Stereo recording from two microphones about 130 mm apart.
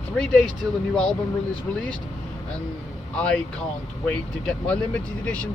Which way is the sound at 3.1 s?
5° left (ahead or behind).